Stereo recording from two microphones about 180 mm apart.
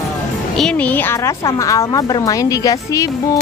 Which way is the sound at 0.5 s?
5° left (ahead or behind).